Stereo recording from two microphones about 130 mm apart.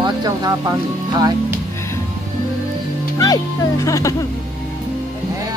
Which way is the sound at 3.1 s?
25° left (ahead or behind).